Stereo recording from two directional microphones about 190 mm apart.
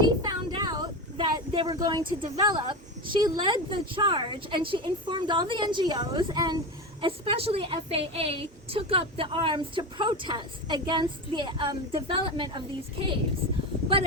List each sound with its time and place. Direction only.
0.0 s speech: 20° right (ahead or behind)